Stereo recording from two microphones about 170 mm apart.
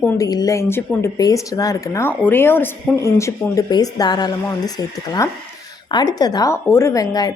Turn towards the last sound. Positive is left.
turn(degrees=20)  # may be behind; listen again after turning